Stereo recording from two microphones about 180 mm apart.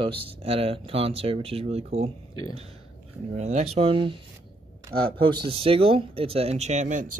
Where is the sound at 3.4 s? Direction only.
40° right (ahead or behind).